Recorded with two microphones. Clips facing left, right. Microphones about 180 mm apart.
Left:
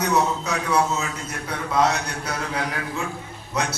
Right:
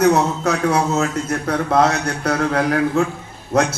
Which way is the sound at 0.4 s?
60° right (ahead or behind).